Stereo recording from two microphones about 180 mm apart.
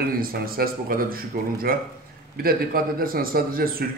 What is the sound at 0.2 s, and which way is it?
A man's voice, 55° right (ahead or behind).